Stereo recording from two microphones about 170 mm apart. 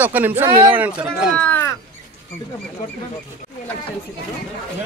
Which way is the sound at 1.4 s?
10° left (ahead or behind).